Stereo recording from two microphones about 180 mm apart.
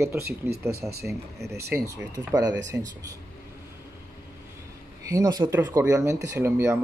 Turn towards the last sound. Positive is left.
turn(degrees=-15)  # may be behind; listen again after turning